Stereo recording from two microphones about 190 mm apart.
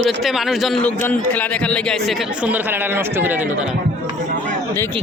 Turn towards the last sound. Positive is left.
turn(degrees=-5)  # may be behind; listen again after turning